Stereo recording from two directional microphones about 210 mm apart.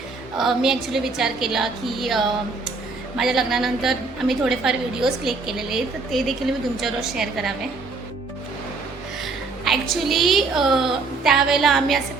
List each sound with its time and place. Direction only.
0.3 s a woman's voice: centre (ahead or behind)
9.2 s a woman's voice: centre (ahead or behind)